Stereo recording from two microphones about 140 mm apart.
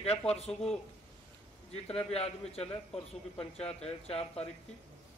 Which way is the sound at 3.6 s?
5° left (ahead or behind).